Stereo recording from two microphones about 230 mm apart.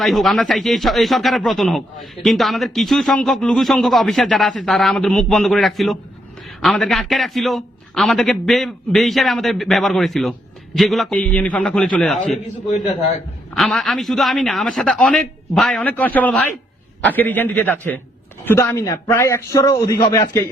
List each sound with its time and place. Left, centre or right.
0.0 s speech: centre
13.5 s a man's voice: centre